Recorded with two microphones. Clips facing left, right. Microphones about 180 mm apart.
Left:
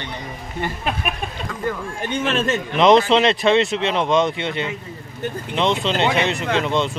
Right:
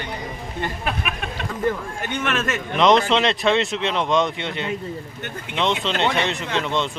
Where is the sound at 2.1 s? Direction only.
30° left (ahead or behind).